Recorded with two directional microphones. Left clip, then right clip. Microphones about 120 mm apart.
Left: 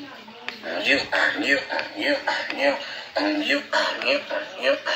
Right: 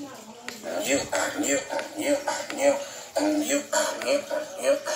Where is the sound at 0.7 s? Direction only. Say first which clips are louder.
Left 5 dB; 20° right (ahead or behind).